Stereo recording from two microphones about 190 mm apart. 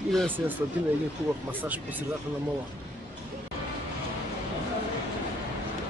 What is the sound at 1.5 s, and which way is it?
Speech, 10° right (ahead or behind).